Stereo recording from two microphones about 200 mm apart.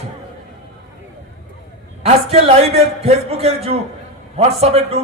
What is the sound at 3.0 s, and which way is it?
Music, 30° right (ahead or behind).